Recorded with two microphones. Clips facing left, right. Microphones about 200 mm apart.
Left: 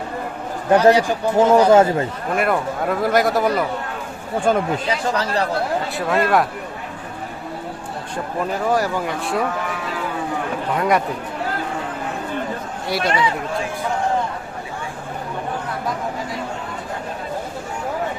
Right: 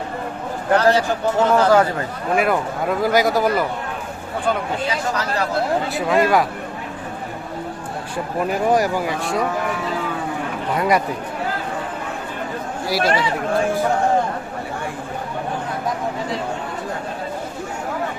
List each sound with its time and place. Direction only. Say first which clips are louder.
0.7 s a man's voice: left 3 dB; 15° left (ahead or behind)
2.3 s a man's voice: right 2 dB; centre (ahead or behind)
4.9 s speech: left 2 dB; 30° left (ahead or behind)
5.9 s a man's voice: right 1 dB; centre (ahead or behind)
8.4 s speech: right 3 dB; 15° right (ahead or behind)
9.0 s a man's voice: even; centre (ahead or behind)
10.8 s a man's voice: even; centre (ahead or behind)
12.9 s a man's voice: right 1 dB; centre (ahead or behind)